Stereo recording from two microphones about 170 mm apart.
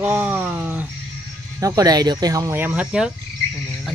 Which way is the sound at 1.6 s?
20° right (ahead or behind).